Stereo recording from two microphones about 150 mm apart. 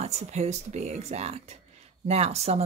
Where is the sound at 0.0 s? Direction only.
50° right (ahead or behind).